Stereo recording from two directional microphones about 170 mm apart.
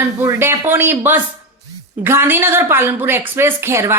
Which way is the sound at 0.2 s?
15° right (ahead or behind).